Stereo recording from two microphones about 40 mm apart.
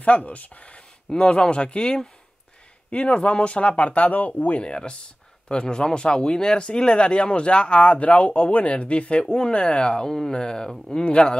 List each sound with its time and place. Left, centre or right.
0.0 s speech: left
4.6 s speech: left
10.0 s speech: centre